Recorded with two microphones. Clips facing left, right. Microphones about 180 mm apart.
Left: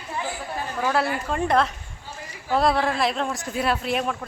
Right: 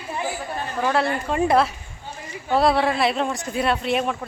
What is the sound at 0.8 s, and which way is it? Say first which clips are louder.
Speech: right 2 dB; 5° left (ahead or behind).